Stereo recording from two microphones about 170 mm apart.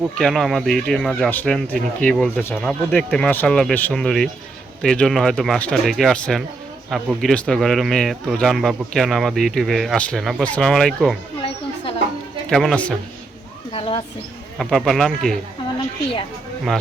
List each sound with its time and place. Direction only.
0.2 s speech: centre (ahead or behind)
12.5 s speech: centre (ahead or behind)
13.7 s speech: 30° left (ahead or behind)
14.6 s speech: centre (ahead or behind)